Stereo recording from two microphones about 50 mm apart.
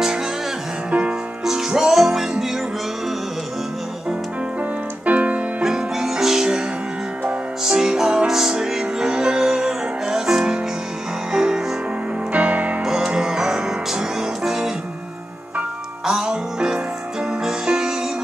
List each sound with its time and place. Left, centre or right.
1.4 s music: centre
5.0 s keyboard: right
5.6 s music: centre
7.6 s music: centre
12.3 s music: right
12.8 s music: centre
16.1 s music: centre